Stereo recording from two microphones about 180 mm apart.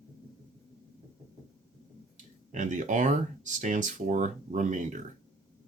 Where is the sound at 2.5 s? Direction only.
45° right (ahead or behind).